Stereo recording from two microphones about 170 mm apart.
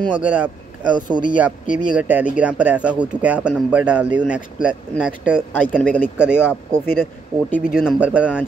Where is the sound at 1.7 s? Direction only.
55° left (ahead or behind).